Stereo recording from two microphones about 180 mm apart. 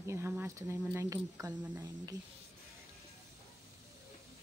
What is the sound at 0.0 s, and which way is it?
Speech, 15° right (ahead or behind).